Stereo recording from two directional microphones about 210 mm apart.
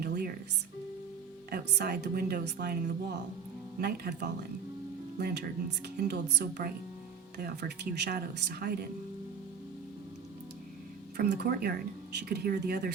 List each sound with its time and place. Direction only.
0.0 s music: 45° right (ahead or behind)
1.5 s a woman's voice: 50° right (ahead or behind)
11.2 s a woman's voice: 50° right (ahead or behind)